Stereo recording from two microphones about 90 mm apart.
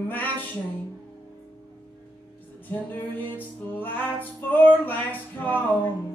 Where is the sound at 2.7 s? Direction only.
20° left (ahead or behind).